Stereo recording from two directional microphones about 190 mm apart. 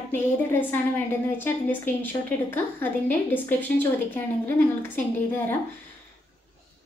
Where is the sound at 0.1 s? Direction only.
10° left (ahead or behind).